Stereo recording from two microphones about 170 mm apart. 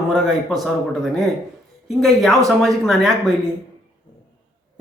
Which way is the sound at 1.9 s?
Centre (ahead or behind).